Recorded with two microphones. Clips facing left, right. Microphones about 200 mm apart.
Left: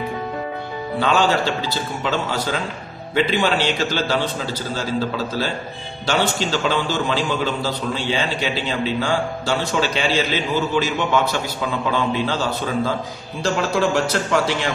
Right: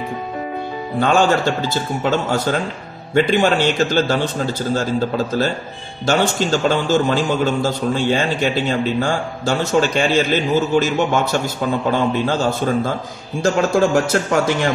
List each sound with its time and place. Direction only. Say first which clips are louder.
0.9 s a man's voice: right 3 dB; 50° right (ahead or behind)